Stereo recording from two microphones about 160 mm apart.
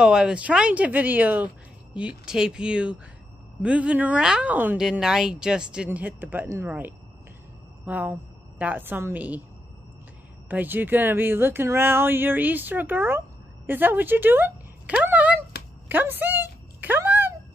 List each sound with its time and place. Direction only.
0.0 s a woman's voice: 5° right (ahead or behind)
10.5 s speech: 10° right (ahead or behind)
15.9 s a sound: 10° right (ahead or behind)